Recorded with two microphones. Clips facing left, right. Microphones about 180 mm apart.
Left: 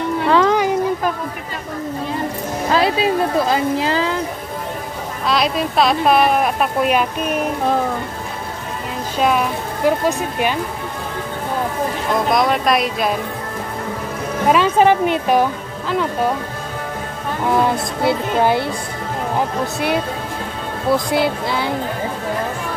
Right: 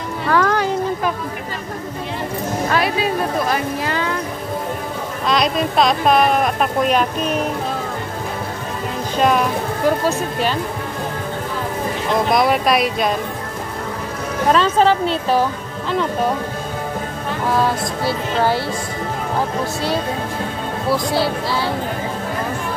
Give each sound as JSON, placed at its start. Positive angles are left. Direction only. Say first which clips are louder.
{"t": 0.3, "sound": "music", "louder": "left 2 dB", "side_deg": 20}
{"t": 2.7, "sound": "speech", "louder": "left 5 dB", "side_deg": 25}
{"t": 5.3, "sound": "speech", "louder": "even", "side_deg": 5}
{"t": 9.8, "sound": "speech", "louder": "left 2 dB", "side_deg": 10}
{"t": 12.3, "sound": "speech", "louder": "even", "side_deg": -5}
{"t": 14.5, "sound": "speech", "louder": "left 1 dB", "side_deg": 10}
{"t": 17.5, "sound": "speech", "louder": "left 2 dB", "side_deg": 20}
{"t": 20.9, "sound": "speech", "louder": "left 2 dB", "side_deg": 20}